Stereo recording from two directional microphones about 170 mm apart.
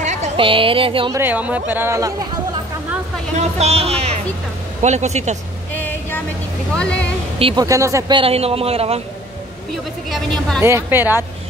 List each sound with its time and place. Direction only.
0.0 s speech: 40° right (ahead or behind)
1.1 s speech: 10° right (ahead or behind)
3.3 s speech: 40° right (ahead or behind)
6.8 s speech: 5° left (ahead or behind)
7.3 s speech: 35° right (ahead or behind)
7.6 s speech: 20° right (ahead or behind)
8.2 s speech: 35° right (ahead or behind)
10.1 s speech: 5° left (ahead or behind)
10.6 s speech: 15° right (ahead or behind)